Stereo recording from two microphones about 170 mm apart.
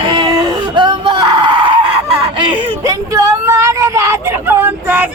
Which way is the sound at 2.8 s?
20° right (ahead or behind).